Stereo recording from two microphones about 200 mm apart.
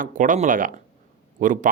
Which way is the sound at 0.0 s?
40° right (ahead or behind).